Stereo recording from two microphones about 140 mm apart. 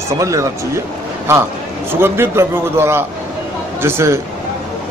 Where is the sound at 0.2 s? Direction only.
20° right (ahead or behind).